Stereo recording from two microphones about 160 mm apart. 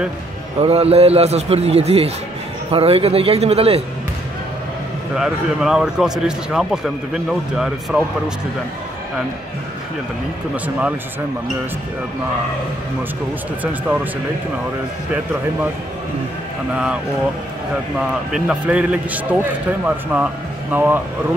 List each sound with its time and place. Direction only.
0.6 s a man's voice: 40° right (ahead or behind)
5.1 s a man's voice: 5° right (ahead or behind)
10.5 s speech: 10° right (ahead or behind)
16.7 s speech: 5° right (ahead or behind)
18.3 s speech: 10° right (ahead or behind)